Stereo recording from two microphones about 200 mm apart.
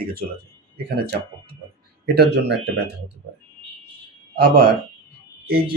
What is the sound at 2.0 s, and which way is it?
Speech, 55° right (ahead or behind).